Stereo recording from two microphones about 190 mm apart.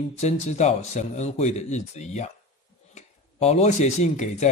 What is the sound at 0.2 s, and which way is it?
Speech, 35° left (ahead or behind).